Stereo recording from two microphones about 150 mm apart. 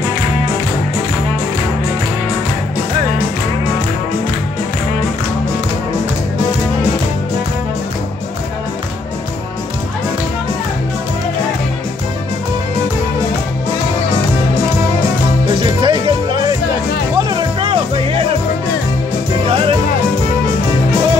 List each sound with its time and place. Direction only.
15.6 s music: 30° right (ahead or behind)